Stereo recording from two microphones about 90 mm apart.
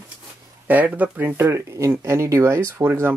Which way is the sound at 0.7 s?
20° right (ahead or behind).